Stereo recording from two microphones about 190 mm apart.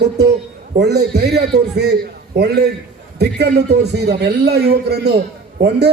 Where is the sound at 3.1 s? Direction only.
60° right (ahead or behind).